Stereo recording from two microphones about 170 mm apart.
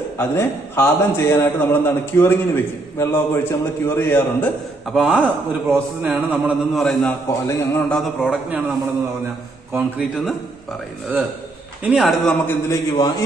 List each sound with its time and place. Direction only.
0.2 s a man's voice: 15° left (ahead or behind)
4.9 s a man's voice: 5° right (ahead or behind)
6.8 s a man's voice: 5° left (ahead or behind)
8.0 s a man's voice: 5° right (ahead or behind)
9.7 s a man's voice: 10° right (ahead or behind)
11.8 s a man's voice: 5° right (ahead or behind)
12.4 s a man's voice: 20° left (ahead or behind)